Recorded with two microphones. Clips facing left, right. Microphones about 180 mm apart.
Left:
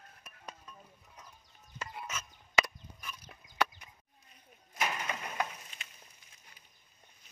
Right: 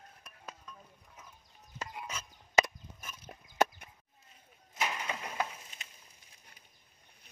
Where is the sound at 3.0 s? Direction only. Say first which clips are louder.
Even; 45° right (ahead or behind).